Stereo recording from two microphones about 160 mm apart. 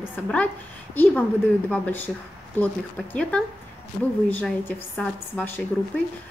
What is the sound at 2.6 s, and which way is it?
A woman's voice, 10° left (ahead or behind).